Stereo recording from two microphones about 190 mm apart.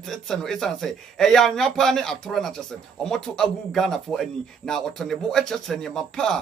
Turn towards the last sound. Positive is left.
turn(degrees=5)  # may be behind; listen again after turning